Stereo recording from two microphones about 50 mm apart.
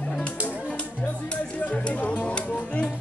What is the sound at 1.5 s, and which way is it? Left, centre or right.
Music, left.